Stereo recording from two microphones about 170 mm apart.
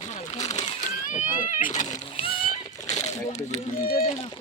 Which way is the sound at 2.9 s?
40° left (ahead or behind).